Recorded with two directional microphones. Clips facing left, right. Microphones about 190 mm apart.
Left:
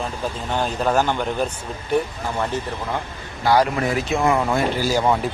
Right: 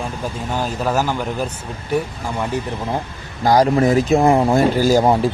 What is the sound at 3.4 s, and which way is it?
Speech, 40° right (ahead or behind).